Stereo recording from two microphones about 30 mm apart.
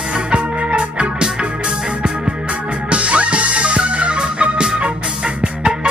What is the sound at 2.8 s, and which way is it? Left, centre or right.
Music, right.